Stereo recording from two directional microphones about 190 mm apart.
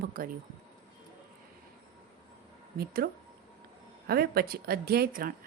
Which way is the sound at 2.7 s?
55° right (ahead or behind).